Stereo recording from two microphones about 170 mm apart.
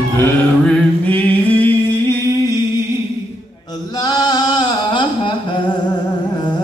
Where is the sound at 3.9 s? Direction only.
25° left (ahead or behind).